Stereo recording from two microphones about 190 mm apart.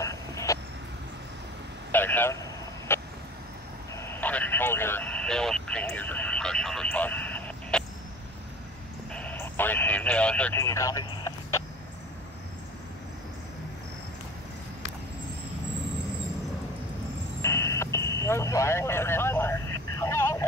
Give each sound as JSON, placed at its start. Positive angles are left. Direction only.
{"t": 0.0, "sound": "vehicle", "side_deg": 15}
{"t": 1.9, "sound": "vehicle", "side_deg": 10}
{"t": 9.1, "sound": "radio", "side_deg": 10}
{"t": 17.4, "sound": "a sound", "side_deg": 15}
{"t": 20.0, "sound": "vehicle", "side_deg": 15}